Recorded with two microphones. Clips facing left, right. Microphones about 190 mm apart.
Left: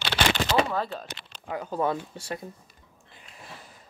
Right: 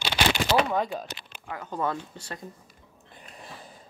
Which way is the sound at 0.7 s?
15° right (ahead or behind).